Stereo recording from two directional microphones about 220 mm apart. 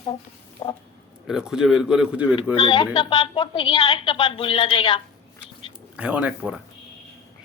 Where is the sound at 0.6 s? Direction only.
20° left (ahead or behind).